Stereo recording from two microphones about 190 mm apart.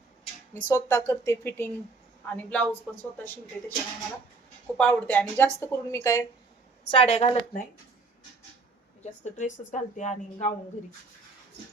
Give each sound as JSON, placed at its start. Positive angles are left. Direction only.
{"t": 0.7, "sound": "a woman's voice", "side_deg": 15}
{"t": 4.8, "sound": "a woman's voice", "side_deg": 10}
{"t": 6.9, "sound": "a woman's voice", "side_deg": 35}
{"t": 9.4, "sound": "a woman's voice", "side_deg": 40}